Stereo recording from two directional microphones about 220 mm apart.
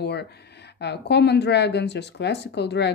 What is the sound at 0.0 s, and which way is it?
A woman's voice, 50° left (ahead or behind).